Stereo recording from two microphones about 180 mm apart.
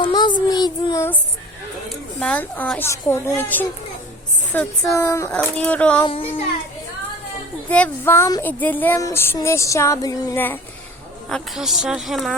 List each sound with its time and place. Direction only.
0.0 s child singing: 25° left (ahead or behind)
1.9 s child singing: 5° left (ahead or behind)
4.5 s a woman's voice: 5° left (ahead or behind)
4.9 s child singing: 15° left (ahead or behind)
6.1 s child singing: 30° left (ahead or behind)
7.7 s child singing: 10° left (ahead or behind)
11.3 s a woman's voice: centre (ahead or behind)